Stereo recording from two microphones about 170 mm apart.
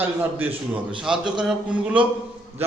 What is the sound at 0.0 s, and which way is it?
A man's voice, 10° right (ahead or behind).